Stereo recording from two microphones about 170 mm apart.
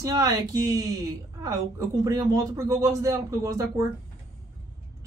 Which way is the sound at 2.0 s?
20° right (ahead or behind).